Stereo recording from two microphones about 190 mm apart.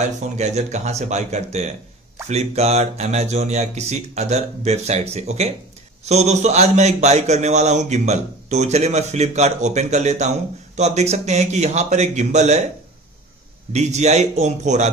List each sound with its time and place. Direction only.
0.4 s a man's voice: 35° right (ahead or behind)
13.7 s a man's voice: 35° right (ahead or behind)